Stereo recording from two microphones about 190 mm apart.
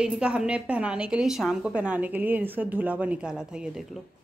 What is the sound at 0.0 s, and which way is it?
A woman's voice, 5° right (ahead or behind).